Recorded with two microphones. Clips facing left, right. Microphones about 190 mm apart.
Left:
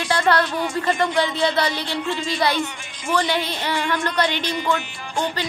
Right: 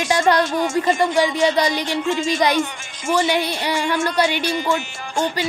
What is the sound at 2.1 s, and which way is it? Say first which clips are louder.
Speech: right 5 dB; 45° right (ahead or behind).